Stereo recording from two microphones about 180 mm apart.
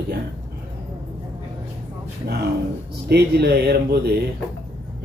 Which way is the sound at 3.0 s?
65° right (ahead or behind).